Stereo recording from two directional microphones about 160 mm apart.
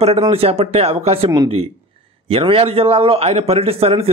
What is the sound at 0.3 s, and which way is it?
A man's voice, 35° right (ahead or behind).